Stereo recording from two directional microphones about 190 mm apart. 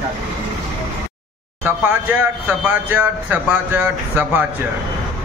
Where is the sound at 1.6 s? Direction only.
10° right (ahead or behind).